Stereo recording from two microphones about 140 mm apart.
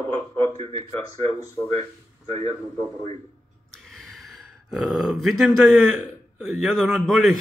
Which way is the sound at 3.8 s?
Centre (ahead or behind).